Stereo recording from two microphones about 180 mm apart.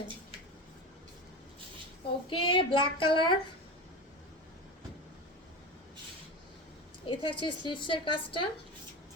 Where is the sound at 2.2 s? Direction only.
30° left (ahead or behind).